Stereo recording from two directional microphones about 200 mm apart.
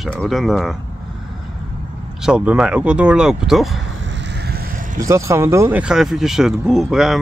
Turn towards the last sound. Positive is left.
turn(degrees=0)  # may be behind; listen again after turning